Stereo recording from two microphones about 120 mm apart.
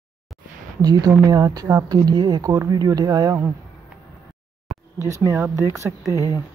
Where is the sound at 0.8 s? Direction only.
30° right (ahead or behind).